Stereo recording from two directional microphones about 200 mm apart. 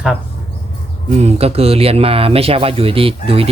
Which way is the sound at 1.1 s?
30° right (ahead or behind).